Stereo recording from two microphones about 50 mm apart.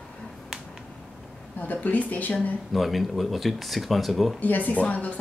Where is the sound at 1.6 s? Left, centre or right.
Left.